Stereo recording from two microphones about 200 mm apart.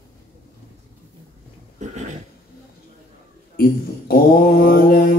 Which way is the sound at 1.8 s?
35° right (ahead or behind).